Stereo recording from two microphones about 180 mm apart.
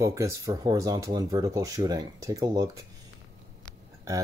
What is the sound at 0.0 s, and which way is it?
Speech, 20° right (ahead or behind).